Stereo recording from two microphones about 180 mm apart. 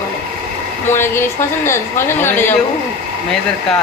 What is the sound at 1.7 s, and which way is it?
Speech, 15° left (ahead or behind).